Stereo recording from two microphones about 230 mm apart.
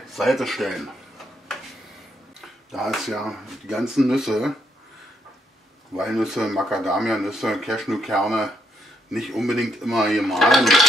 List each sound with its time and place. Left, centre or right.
0.1 s a sound: centre
2.4 s speech: centre
5.9 s speech: centre